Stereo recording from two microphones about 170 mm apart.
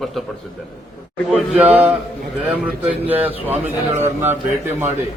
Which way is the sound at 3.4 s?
15° right (ahead or behind).